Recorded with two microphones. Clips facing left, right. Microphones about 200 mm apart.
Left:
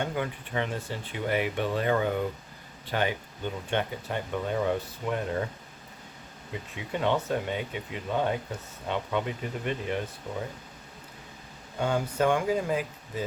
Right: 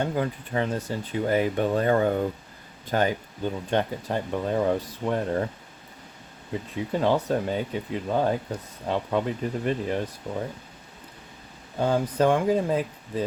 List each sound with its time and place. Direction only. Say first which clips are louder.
0.0 s speech: right 4 dB; 35° right (ahead or behind)
6.7 s speech: right 4 dB; 35° right (ahead or behind)
11.8 s speech: right 4 dB; 35° right (ahead or behind)